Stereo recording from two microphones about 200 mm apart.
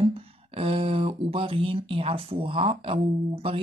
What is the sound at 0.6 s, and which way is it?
Speech, 25° right (ahead or behind).